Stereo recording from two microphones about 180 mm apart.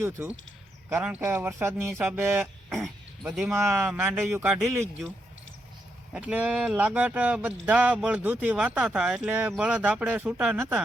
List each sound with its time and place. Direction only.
0.0 s speech: 15° right (ahead or behind)
2.7 s speech: centre (ahead or behind)
6.1 s speech: 10° right (ahead or behind)